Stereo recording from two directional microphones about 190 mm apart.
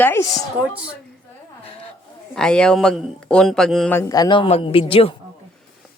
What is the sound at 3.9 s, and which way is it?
A woman's voice, 15° left (ahead or behind).